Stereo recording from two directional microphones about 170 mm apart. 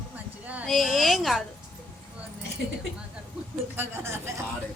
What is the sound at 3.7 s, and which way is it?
Speech, 15° right (ahead or behind).